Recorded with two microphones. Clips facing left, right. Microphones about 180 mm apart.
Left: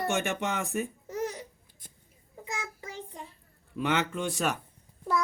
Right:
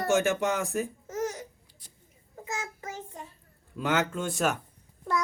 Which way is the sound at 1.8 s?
50° left (ahead or behind).